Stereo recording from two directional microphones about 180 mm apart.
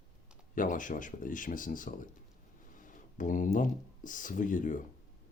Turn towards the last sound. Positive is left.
turn(degrees=45)  # may be behind; listen again after turning